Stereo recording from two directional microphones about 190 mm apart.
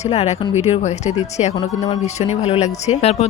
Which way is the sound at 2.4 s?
35° left (ahead or behind).